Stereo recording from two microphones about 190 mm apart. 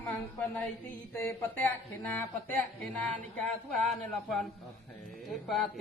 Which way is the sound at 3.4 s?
5° left (ahead or behind).